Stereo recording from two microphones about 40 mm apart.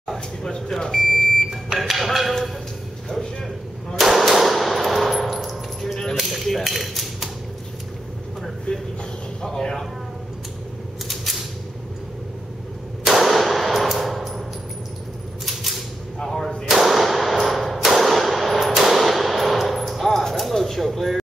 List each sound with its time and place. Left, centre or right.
0.1 s speech: centre
1.8 s music: centre
3.9 s clang: centre
6.1 s tap: centre
8.7 s a sound: left
9.4 s a sound: centre
13.0 s clang: centre
16.2 s whip: centre
16.6 s whip: centre
19.8 s a sound: centre